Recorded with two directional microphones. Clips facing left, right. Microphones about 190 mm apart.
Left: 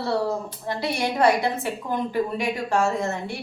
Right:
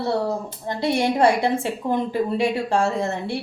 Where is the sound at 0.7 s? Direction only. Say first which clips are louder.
Right 5 dB; 25° right (ahead or behind).